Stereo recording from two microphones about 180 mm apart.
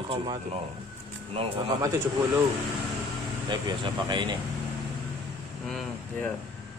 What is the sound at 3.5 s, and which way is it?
Speech, 25° right (ahead or behind).